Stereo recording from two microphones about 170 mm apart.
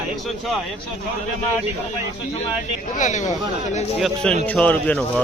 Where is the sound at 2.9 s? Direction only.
45° left (ahead or behind).